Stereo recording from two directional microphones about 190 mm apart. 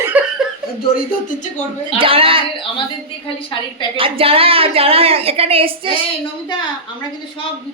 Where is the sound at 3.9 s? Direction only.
30° right (ahead or behind).